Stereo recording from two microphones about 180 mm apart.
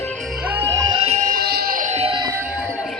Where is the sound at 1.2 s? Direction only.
55° right (ahead or behind); by 2.3 s 25° right (ahead or behind).